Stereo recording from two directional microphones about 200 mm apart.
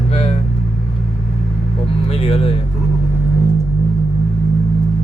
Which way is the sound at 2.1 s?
30° left (ahead or behind).